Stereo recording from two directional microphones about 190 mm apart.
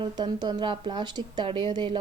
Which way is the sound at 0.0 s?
20° right (ahead or behind).